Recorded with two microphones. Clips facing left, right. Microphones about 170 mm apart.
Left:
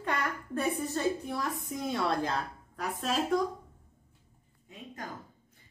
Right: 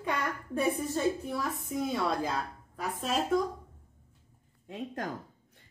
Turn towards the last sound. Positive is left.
turn(degrees=-65)  # may be behind; listen again after turning